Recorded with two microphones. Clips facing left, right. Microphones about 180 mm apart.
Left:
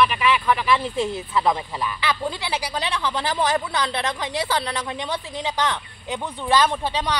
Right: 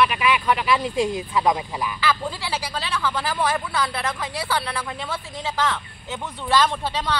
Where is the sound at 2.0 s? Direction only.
20° left (ahead or behind).